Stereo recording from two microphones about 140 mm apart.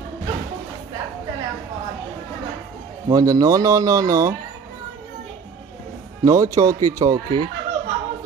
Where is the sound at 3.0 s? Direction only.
25° right (ahead or behind).